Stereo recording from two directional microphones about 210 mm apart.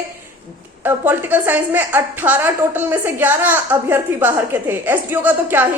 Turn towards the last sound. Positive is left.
turn(degrees=-10)  # may be behind; listen again after turning